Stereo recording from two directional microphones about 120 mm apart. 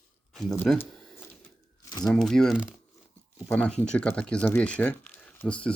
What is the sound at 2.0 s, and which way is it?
Speech, 5° left (ahead or behind).